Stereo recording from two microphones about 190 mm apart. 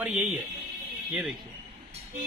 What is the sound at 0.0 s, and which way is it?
Speech, 10° right (ahead or behind).